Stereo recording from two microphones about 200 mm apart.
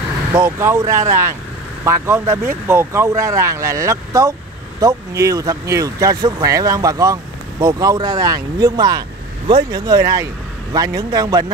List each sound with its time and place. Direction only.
0.3 s speech: 10° right (ahead or behind)